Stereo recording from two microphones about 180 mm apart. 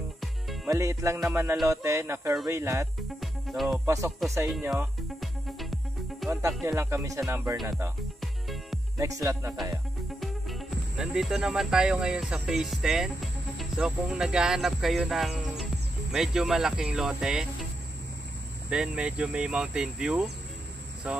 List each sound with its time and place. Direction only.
0.7 s music: 15° right (ahead or behind)
3.2 s music: centre (ahead or behind)
3.8 s music: 15° right (ahead or behind)
5.2 s music: centre (ahead or behind)
6.6 s music: 15° right (ahead or behind)
8.2 s music: centre (ahead or behind)
8.9 s music: 20° right (ahead or behind)
10.2 s speech: centre (ahead or behind)
18.7 s speech: 5° right (ahead or behind)
21.0 s music: 5° right (ahead or behind)